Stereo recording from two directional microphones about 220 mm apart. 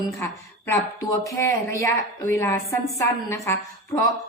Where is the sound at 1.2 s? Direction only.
15° left (ahead or behind).